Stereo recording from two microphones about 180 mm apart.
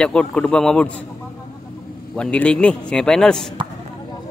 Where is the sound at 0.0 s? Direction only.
5° left (ahead or behind).